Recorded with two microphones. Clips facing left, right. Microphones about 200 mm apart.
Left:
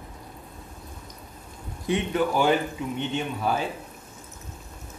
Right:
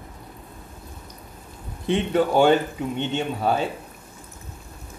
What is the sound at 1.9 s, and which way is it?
Speech, 30° right (ahead or behind).